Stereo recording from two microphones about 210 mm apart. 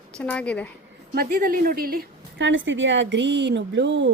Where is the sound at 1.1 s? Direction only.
40° right (ahead or behind).